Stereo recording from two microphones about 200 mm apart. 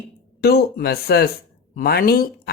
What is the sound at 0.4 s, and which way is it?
Speech, 50° left (ahead or behind).